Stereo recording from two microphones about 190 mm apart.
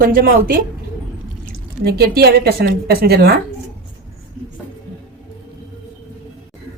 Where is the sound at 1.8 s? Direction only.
55° right (ahead or behind).